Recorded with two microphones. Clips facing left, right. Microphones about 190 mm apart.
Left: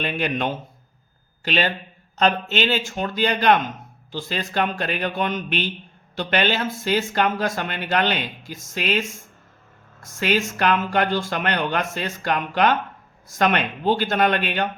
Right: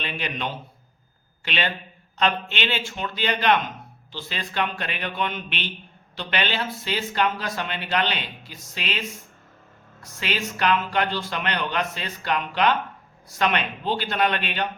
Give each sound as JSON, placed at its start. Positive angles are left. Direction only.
{"t": 0.0, "sound": "speech", "side_deg": 50}